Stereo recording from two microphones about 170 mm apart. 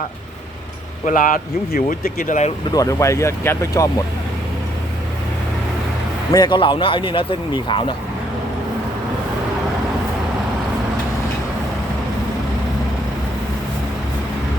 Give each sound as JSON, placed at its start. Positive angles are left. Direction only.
{"t": 1.0, "sound": "speech", "side_deg": 50}
{"t": 2.6, "sound": "speech", "side_deg": 20}
{"t": 6.3, "sound": "speech", "side_deg": 25}